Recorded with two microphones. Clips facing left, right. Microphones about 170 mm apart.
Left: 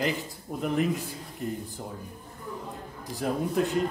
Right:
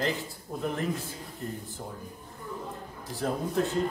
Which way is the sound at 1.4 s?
15° left (ahead or behind).